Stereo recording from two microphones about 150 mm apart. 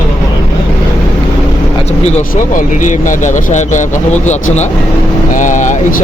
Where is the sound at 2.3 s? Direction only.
60° left (ahead or behind).